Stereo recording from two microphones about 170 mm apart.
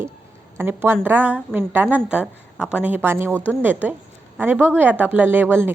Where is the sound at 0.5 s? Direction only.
15° right (ahead or behind).